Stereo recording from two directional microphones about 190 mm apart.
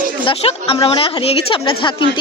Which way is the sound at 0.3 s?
30° left (ahead or behind).